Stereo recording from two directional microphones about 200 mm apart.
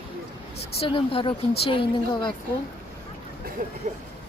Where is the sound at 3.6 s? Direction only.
40° right (ahead or behind).